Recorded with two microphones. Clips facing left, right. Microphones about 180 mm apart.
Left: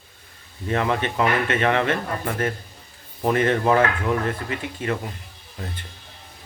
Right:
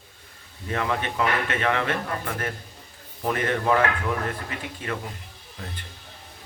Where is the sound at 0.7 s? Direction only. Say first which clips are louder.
Left 4 dB; 25° left (ahead or behind).